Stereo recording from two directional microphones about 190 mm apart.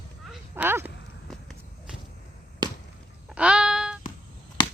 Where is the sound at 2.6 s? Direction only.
25° right (ahead or behind).